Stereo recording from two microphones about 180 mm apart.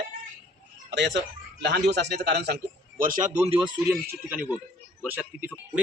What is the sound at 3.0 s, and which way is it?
Speech, 50° right (ahead or behind).